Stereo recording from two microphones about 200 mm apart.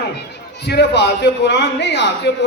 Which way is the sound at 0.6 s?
55° left (ahead or behind).